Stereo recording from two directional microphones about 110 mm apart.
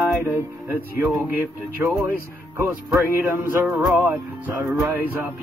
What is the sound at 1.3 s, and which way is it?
Music, 15° right (ahead or behind).